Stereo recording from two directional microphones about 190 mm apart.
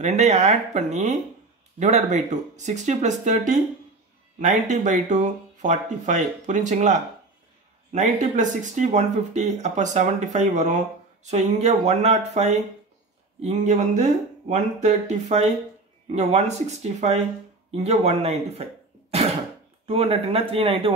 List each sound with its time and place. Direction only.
0.0 s speech: 35° right (ahead or behind)